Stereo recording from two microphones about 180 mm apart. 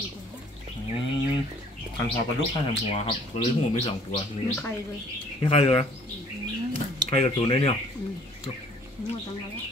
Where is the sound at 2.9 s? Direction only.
35° left (ahead or behind).